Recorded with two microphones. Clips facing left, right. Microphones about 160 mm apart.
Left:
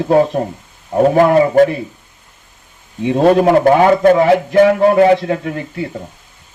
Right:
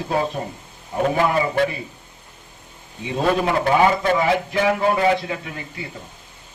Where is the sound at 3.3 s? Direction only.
50° left (ahead or behind).